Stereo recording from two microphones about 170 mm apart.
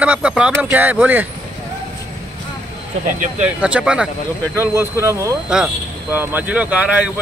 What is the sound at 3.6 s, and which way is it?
Speech, 5° right (ahead or behind).